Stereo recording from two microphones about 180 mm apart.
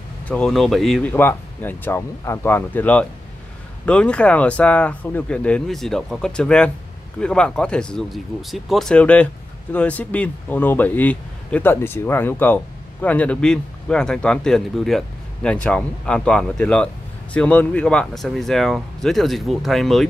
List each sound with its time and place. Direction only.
0.3 s a man's voice: centre (ahead or behind)
1.1 s a man's voice: 10° left (ahead or behind)